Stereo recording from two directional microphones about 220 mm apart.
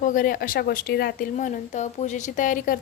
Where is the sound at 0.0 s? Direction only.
35° left (ahead or behind).